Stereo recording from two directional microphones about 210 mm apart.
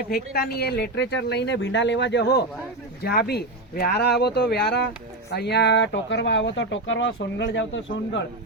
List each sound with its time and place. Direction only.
0.1 s speech: 45° left (ahead or behind)